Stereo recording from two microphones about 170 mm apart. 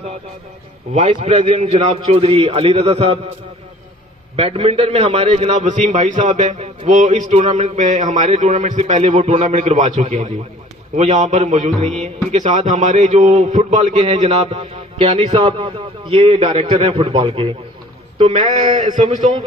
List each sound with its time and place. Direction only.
0.9 s a man's voice: 40° right (ahead or behind)
4.4 s a man's voice: 35° right (ahead or behind)
18.8 s a man's voice: 45° right (ahead or behind)